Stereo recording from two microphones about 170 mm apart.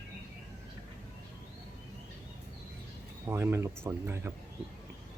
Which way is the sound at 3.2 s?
15° right (ahead or behind).